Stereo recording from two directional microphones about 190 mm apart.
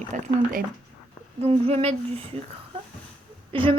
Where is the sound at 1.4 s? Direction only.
30° right (ahead or behind).